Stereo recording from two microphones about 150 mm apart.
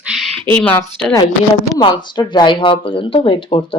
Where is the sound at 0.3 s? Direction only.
35° right (ahead or behind).